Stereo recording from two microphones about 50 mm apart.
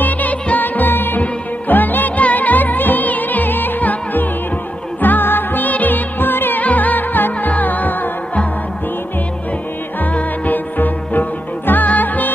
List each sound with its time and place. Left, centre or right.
0.0 s music: left
6.6 s music: left
10.1 s music: left